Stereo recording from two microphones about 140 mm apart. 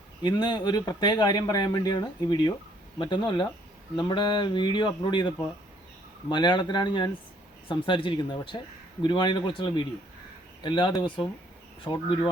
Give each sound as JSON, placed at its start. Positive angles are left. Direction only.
{"t": 0.2, "sound": "speech", "side_deg": 30}